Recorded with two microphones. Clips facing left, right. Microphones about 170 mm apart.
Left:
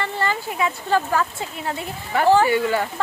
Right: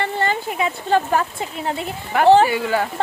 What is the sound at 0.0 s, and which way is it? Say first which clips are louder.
Speech: right 3 dB; 20° right (ahead or behind).